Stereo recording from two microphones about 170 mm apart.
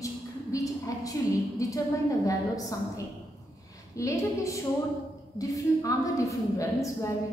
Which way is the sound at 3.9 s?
20° left (ahead or behind).